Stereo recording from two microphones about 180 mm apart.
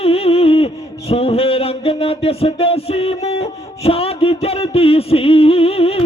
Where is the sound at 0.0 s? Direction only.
30° left (ahead or behind).